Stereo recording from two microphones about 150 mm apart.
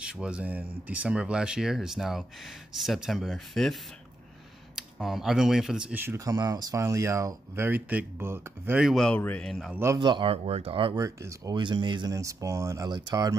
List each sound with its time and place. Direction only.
0.0 s speech: 5° right (ahead or behind)
4.7 s speech: centre (ahead or behind)
8.8 s speech: centre (ahead or behind)
9.9 s speech: 30° right (ahead or behind)
11.0 s speech: 20° right (ahead or behind)